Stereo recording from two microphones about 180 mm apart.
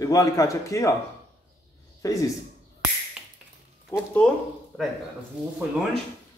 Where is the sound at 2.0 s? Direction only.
20° left (ahead or behind).